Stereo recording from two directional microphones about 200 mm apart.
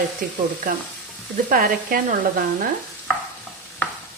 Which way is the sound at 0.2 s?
45° right (ahead or behind).